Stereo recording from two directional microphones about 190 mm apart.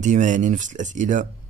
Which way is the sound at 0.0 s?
40° right (ahead or behind).